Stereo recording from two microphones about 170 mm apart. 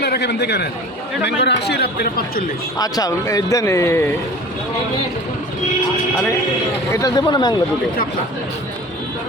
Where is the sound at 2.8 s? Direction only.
20° left (ahead or behind).